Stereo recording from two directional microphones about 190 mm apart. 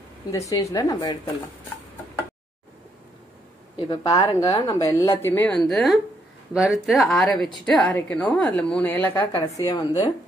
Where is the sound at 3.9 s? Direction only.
20° left (ahead or behind).